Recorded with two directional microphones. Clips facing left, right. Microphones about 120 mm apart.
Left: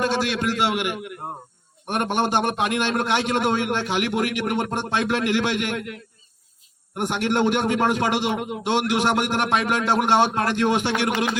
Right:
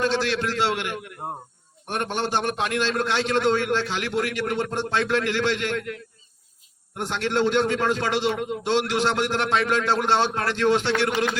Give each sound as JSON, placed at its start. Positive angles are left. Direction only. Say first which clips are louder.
{"t": 0.0, "sound": "a man's voice", "louder": "left 1 dB", "side_deg": 15}